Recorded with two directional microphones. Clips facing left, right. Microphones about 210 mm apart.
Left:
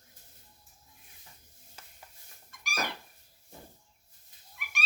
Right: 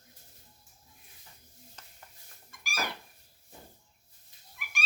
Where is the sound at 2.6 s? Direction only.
Centre (ahead or behind).